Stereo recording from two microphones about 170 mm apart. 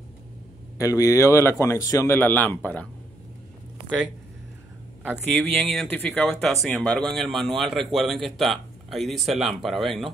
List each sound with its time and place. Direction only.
0.7 s a man's voice: 20° left (ahead or behind)
5.3 s speech: centre (ahead or behind)